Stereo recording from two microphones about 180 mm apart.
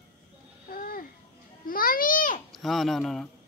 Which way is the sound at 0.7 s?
55° left (ahead or behind).